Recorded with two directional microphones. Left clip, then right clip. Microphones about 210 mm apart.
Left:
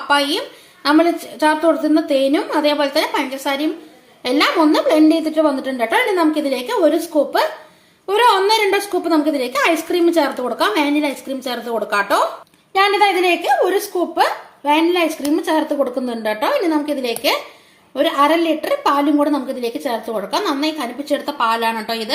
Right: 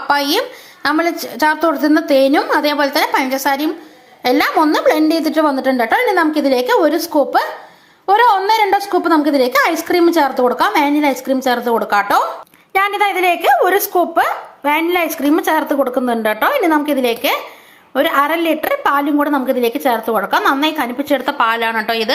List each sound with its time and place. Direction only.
0.1 s a woman's voice: 20° right (ahead or behind)
12.7 s speech: 10° right (ahead or behind)